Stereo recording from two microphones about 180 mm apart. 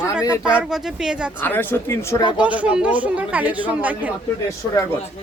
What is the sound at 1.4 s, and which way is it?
Speech, 10° left (ahead or behind).